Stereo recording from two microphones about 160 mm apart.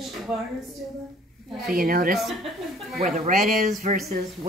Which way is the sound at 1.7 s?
60° right (ahead or behind).